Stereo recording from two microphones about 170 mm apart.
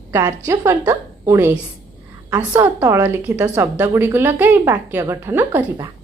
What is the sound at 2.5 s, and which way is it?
A woman's voice, 15° right (ahead or behind).